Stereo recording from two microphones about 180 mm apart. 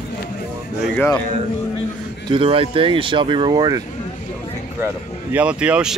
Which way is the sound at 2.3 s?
30° right (ahead or behind).